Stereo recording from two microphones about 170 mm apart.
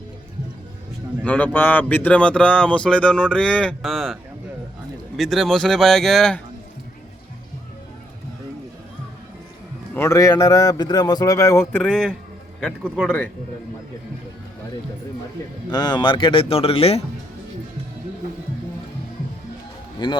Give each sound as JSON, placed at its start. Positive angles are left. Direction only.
{"t": 1.2, "sound": "speech", "side_deg": 10}
{"t": 9.9, "sound": "a man's voice", "side_deg": 15}
{"t": 15.7, "sound": "speech", "side_deg": 25}
{"t": 20.0, "sound": "a man's voice", "side_deg": 25}